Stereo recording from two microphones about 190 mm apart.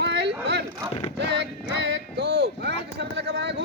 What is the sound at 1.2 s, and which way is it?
Music, 65° right (ahead or behind).